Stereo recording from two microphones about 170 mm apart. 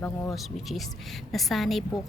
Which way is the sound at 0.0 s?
15° left (ahead or behind).